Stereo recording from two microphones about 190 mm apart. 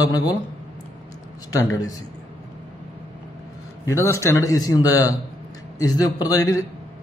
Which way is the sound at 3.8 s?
15° left (ahead or behind).